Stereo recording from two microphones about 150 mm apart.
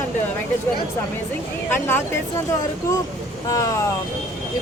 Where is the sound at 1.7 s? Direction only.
15° left (ahead or behind).